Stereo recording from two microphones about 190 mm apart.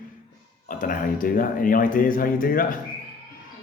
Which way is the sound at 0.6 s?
45° left (ahead or behind).